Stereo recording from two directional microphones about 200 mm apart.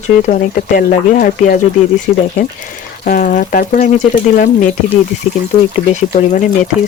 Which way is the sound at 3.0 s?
45° left (ahead or behind).